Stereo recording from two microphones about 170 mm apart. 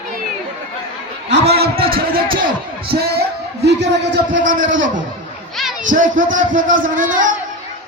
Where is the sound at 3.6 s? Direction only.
90° right.